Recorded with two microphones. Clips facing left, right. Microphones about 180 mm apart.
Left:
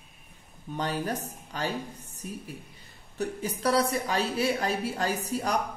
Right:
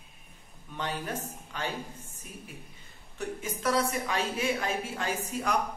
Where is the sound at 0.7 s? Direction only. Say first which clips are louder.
Left 4 dB; 40° left (ahead or behind).